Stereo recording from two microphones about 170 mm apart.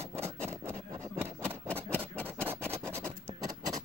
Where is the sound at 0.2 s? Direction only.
15° right (ahead or behind).